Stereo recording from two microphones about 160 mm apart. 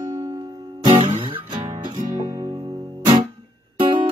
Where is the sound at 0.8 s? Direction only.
30° right (ahead or behind).